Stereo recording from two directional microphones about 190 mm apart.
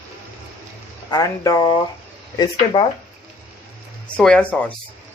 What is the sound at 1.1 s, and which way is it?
Speech, 20° left (ahead or behind).